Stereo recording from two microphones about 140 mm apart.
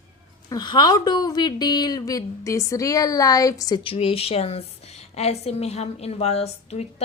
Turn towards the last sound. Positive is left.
turn(degrees=50)  # may be behind; listen again after turning